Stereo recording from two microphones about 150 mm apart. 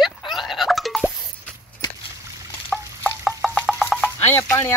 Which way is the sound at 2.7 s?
Centre (ahead or behind).